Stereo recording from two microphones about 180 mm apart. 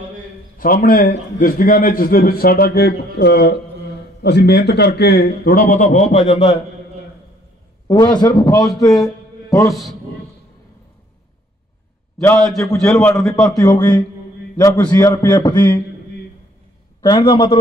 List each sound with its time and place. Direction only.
0.6 s a man's voice: 50° left (ahead or behind)
7.9 s a man's voice: 20° left (ahead or behind)
12.4 s a man's voice: centre (ahead or behind)
12.8 s a man's voice: 15° left (ahead or behind)
17.0 s a man's voice: 25° left (ahead or behind)